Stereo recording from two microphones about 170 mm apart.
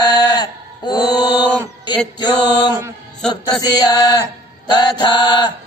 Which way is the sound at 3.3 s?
25° left (ahead or behind).